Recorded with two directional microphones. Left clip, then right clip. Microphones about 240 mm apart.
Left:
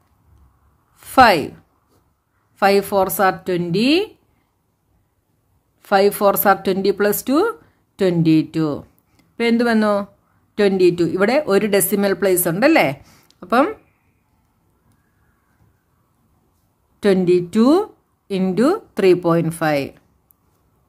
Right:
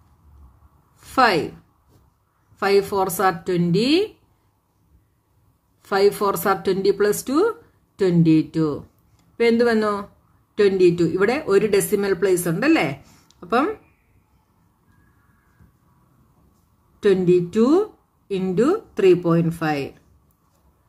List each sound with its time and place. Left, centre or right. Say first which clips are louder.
0.9 s a woman's voice: left 6 dB; left
2.5 s a woman's voice: left 4 dB; left
5.8 s a woman's voice: left 3 dB; left
17.0 s speech: left 1 dB; left